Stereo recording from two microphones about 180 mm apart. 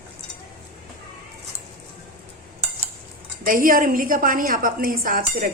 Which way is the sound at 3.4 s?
50° right (ahead or behind).